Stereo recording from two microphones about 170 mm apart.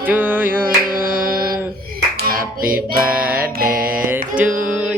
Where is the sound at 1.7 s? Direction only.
65° right (ahead or behind).